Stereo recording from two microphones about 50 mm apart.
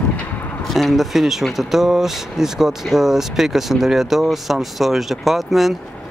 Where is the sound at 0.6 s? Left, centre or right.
Centre.